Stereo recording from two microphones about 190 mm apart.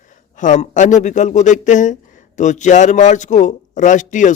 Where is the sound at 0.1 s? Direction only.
40° left (ahead or behind).